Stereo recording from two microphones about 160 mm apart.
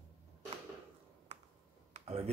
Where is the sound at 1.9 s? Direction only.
40° right (ahead or behind).